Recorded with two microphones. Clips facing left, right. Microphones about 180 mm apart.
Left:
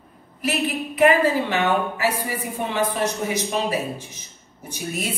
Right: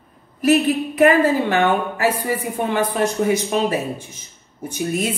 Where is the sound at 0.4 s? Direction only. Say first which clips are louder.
Right 8 dB; 45° right (ahead or behind).